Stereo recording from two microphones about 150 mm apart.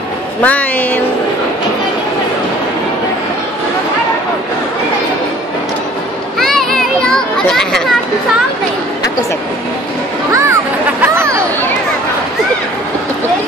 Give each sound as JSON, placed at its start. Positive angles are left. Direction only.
{"t": 0.4, "sound": "a woman's voice", "side_deg": 10}
{"t": 6.4, "sound": "children playing", "side_deg": 5}
{"t": 10.3, "sound": "a sound", "side_deg": -20}